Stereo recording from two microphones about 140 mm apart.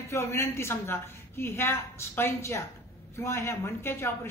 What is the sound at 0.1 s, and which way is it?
A woman's voice, 20° left (ahead or behind).